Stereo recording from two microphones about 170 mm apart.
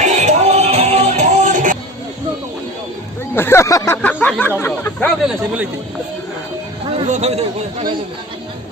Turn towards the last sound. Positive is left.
turn(degrees=-40)  # may be behind; listen again after turning